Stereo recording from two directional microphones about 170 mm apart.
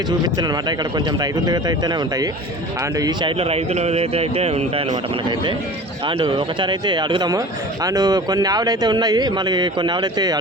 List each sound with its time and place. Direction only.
0.3 s speech: 25° right (ahead or behind)